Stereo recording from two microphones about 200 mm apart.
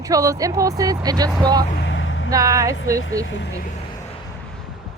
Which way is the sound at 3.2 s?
65° left (ahead or behind).